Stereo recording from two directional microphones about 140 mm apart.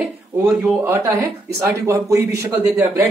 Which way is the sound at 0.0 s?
10° right (ahead or behind).